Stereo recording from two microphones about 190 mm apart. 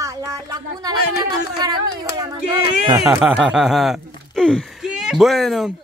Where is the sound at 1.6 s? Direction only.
20° right (ahead or behind).